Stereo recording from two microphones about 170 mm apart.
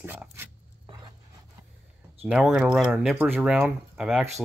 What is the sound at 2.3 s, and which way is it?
Speech, 5° right (ahead or behind).